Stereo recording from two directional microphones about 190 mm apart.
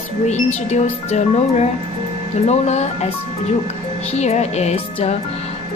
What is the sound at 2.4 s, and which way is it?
Speech, 35° left (ahead or behind).